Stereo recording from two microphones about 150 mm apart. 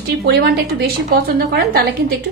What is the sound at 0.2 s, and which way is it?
A woman's voice, 90° right.